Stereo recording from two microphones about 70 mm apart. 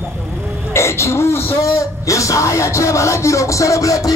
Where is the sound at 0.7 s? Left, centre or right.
Left.